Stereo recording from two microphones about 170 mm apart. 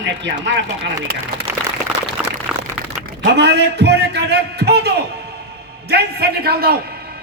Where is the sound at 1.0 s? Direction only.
70° right (ahead or behind).